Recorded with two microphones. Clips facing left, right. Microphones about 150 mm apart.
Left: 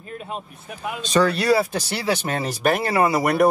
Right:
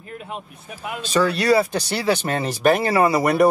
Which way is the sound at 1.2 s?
Centre (ahead or behind).